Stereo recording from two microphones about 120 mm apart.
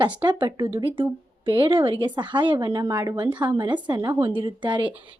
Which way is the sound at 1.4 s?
45° right (ahead or behind).